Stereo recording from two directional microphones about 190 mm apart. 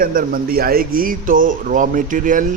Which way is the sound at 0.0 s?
50° right (ahead or behind).